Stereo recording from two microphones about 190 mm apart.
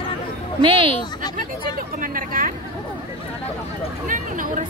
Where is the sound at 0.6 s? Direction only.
25° right (ahead or behind).